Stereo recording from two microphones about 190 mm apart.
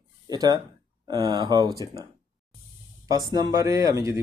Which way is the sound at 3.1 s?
20° right (ahead or behind).